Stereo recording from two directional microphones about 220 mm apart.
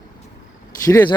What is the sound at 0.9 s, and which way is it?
Speech, 15° left (ahead or behind).